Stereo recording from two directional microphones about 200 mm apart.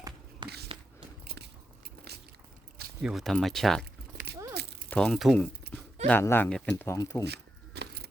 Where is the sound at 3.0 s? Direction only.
Centre (ahead or behind).